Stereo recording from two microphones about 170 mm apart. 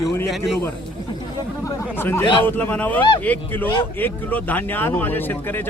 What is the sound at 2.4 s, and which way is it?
Speech, 10° left (ahead or behind).